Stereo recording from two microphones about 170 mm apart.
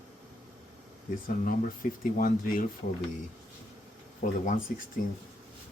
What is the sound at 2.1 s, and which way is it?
Speech, 55° left (ahead or behind).